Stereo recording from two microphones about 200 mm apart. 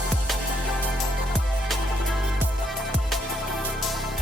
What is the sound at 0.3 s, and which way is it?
Music, centre (ahead or behind).